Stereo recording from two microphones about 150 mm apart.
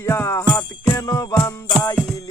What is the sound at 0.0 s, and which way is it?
Jingle bell, 15° left (ahead or behind).